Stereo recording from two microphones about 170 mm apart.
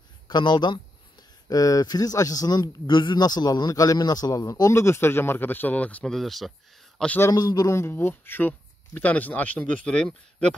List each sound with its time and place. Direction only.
0.3 s speech: 25° left (ahead or behind); by 6.5 s centre (ahead or behind)
7.0 s speech: 10° left (ahead or behind)